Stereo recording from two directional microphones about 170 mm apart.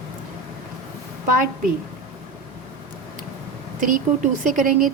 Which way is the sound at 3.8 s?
50° right (ahead or behind).